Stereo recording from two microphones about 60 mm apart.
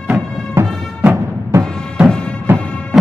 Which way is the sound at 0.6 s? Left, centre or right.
Right.